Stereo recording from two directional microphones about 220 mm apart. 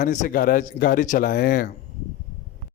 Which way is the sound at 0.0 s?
35° left (ahead or behind).